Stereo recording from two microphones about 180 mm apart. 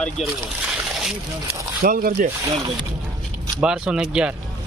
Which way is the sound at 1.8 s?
55° right (ahead or behind).